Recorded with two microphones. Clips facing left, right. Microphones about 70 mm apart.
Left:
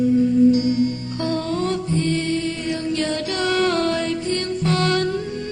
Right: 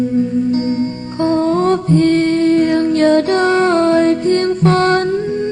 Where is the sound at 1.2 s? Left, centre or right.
Right.